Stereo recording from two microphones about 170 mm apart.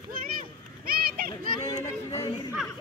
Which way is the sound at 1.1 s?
60° right (ahead or behind).